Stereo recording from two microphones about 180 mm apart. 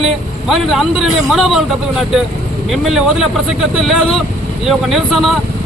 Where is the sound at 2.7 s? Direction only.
Centre (ahead or behind).